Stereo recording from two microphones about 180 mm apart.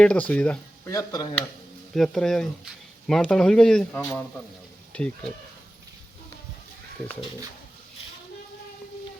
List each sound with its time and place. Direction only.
0.0 s speech: 5° left (ahead or behind)
0.9 s speech: 20° left (ahead or behind)
2.0 s speech: centre (ahead or behind)